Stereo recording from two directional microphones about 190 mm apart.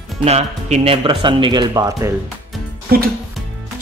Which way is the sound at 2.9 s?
55° right (ahead or behind).